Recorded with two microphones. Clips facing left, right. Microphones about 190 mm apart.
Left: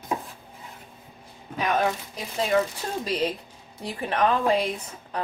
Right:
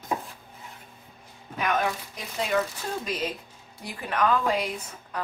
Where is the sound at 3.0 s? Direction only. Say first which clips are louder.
Left 4 dB; 35° left (ahead or behind).